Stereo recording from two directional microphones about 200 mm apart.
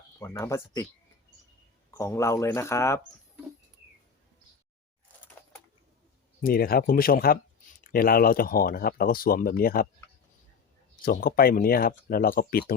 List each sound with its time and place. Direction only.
0.2 s speech: 15° left (ahead or behind)
1.9 s speech: 15° left (ahead or behind)
6.4 s speech: 50° left (ahead or behind)
11.0 s speech: 45° left (ahead or behind)